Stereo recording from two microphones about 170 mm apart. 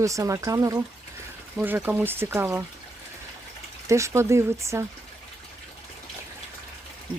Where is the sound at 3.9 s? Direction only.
15° right (ahead or behind).